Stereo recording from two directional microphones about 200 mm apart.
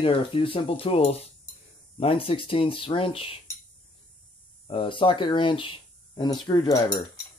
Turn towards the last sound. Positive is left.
turn(degrees=20)  # may be behind; listen again after turning